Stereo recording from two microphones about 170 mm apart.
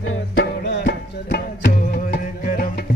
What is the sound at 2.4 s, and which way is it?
Music, 50° left (ahead or behind).